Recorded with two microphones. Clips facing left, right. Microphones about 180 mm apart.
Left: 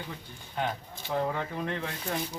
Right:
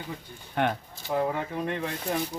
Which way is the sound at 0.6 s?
65° right (ahead or behind).